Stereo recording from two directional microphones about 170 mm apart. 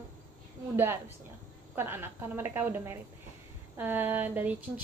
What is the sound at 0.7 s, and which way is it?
A woman's voice, 15° right (ahead or behind).